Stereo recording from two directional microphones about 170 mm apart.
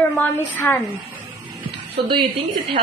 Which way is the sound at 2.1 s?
30° right (ahead or behind).